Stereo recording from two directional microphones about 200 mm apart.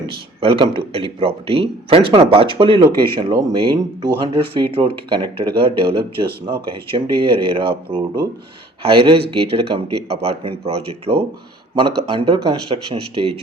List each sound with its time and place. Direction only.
0.0 s speech: 25° right (ahead or behind)